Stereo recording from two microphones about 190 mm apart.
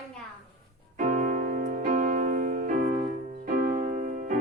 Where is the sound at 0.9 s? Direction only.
45° right (ahead or behind).